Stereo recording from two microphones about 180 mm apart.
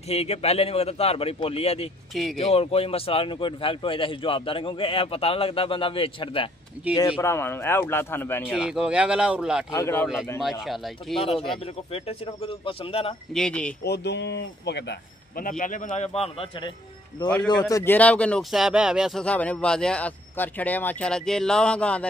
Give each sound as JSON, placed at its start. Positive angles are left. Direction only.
{"t": 0.1, "sound": "a man's voice", "side_deg": 35}
{"t": 7.0, "sound": "speech", "side_deg": 15}
{"t": 8.5, "sound": "speech", "side_deg": -5}
{"t": 9.7, "sound": "speech", "side_deg": 15}
{"t": 10.6, "sound": "speech", "side_deg": 0}
{"t": 11.6, "sound": "a man's voice", "side_deg": 35}
{"t": 13.3, "sound": "speech", "side_deg": 5}
{"t": 13.8, "sound": "speech", "side_deg": 70}
{"t": 15.4, "sound": "a man's voice", "side_deg": 50}
{"t": 17.5, "sound": "speech", "side_deg": 20}